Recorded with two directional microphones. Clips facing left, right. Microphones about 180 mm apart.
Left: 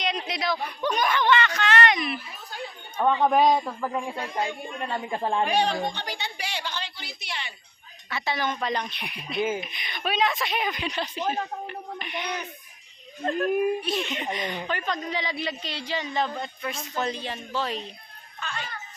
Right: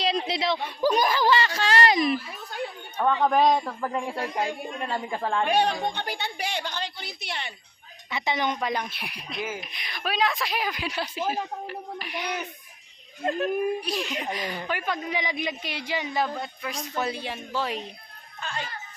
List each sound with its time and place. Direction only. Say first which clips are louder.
0.0 s a sound: right 3 dB; 30° right (ahead or behind)
3.0 s a woman's voice: left 1 dB; 5° left (ahead or behind)
5.1 s a woman's voice: left 2 dB; 15° left (ahead or behind)
5.5 s a sound: right 1 dB; 55° right (ahead or behind)
8.1 s a woman's voice: right 1 dB; 20° right (ahead or behind)
13.6 s speech: left 2 dB; centre (ahead or behind)
18.3 s music: right 1 dB; 25° right (ahead or behind)